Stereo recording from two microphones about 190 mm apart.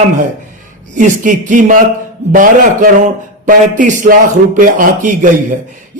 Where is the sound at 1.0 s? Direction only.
40° right (ahead or behind).